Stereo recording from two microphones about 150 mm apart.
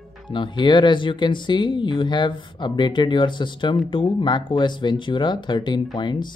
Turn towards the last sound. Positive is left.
turn(degrees=30)  # may be behind; listen again after turning